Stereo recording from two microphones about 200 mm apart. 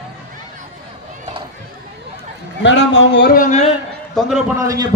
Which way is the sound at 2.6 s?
70° left (ahead or behind).